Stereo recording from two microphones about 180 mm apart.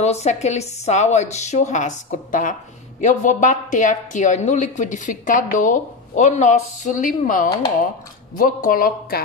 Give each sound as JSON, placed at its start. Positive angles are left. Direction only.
{"t": 0.0, "sound": "a woman's voice", "side_deg": 35}